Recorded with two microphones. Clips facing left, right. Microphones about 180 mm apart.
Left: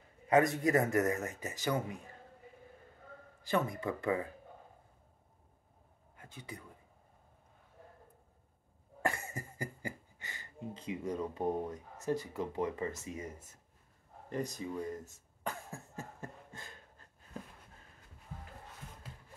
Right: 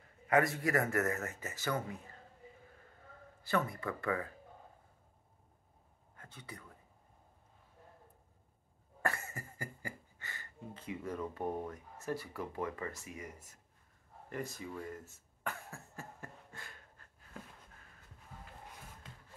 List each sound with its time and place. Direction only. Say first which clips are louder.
0.3 s a man's voice: left 3 dB; 20° left (ahead or behind)
3.4 s speech: left 2 dB; 20° left (ahead or behind)
6.1 s speech: left 3 dB; 15° left (ahead or behind)
9.0 s speech: left 2 dB; 15° left (ahead or behind)
14.3 s cough: left 4 dB; 15° left (ahead or behind)